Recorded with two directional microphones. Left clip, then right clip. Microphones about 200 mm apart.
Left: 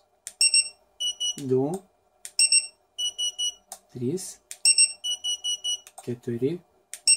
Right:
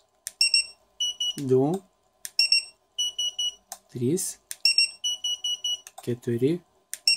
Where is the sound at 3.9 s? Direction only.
45° right (ahead or behind).